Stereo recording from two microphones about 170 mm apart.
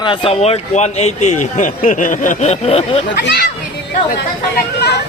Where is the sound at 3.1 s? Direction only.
70° left (ahead or behind).